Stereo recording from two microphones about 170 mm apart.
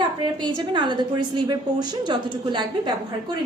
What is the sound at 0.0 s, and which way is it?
A woman's voice, 25° right (ahead or behind).